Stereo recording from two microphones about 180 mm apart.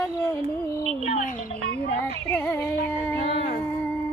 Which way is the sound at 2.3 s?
10° left (ahead or behind).